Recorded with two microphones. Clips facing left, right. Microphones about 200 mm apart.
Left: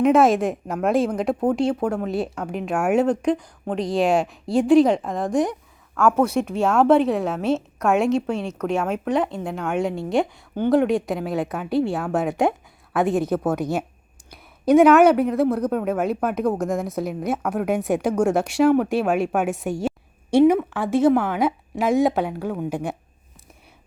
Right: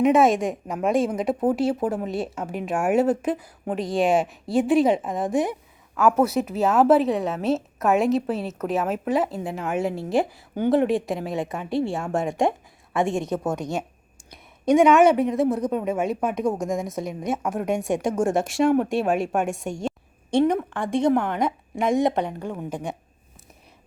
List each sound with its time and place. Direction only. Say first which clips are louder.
0.0 s speech: left 2 dB; centre (ahead or behind)